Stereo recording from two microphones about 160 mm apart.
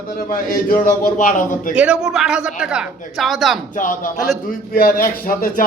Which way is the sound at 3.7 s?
55° left (ahead or behind).